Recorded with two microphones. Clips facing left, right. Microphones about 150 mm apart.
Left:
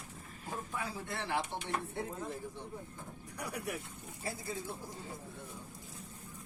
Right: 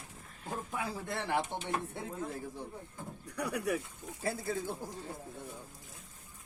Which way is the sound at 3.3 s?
65° right (ahead or behind).